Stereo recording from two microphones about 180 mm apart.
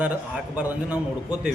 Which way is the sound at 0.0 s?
5° right (ahead or behind).